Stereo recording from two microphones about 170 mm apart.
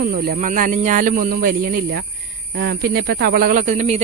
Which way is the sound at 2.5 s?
80° right.